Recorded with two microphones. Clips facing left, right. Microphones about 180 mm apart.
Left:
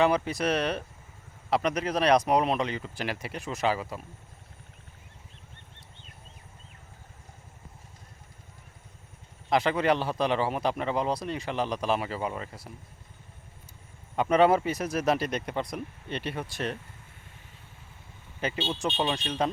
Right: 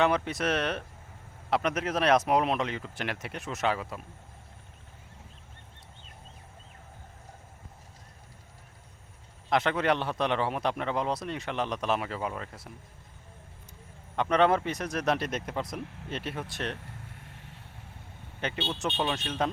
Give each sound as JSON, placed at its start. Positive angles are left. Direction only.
{"t": 0.0, "sound": "a man's voice", "side_deg": 0}
{"t": 9.5, "sound": "a man's voice", "side_deg": 0}
{"t": 14.2, "sound": "a man's voice", "side_deg": 5}
{"t": 16.8, "sound": "vehicle", "side_deg": -70}
{"t": 18.3, "sound": "a man's voice", "side_deg": 0}